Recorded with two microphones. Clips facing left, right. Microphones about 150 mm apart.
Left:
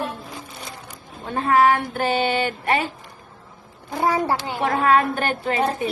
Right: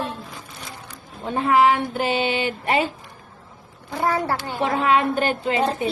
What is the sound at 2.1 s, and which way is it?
Speech, 45° left (ahead or behind).